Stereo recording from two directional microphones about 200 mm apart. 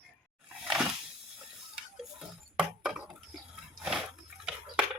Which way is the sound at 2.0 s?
5° right (ahead or behind).